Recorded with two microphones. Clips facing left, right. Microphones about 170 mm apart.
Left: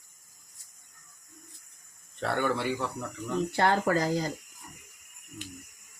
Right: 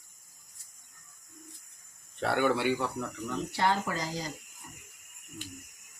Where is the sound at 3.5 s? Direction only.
55° left (ahead or behind).